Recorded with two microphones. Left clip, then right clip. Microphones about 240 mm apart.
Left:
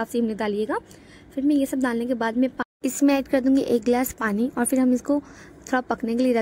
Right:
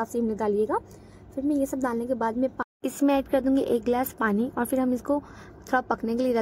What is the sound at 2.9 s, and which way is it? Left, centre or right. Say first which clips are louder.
A woman's voice: left 2 dB; left.